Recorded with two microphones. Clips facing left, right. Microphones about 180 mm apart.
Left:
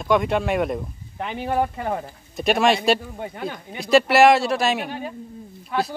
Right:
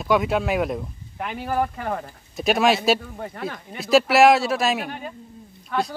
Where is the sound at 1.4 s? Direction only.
25° left (ahead or behind).